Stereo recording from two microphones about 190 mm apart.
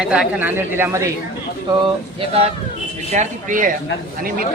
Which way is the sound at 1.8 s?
30° right (ahead or behind).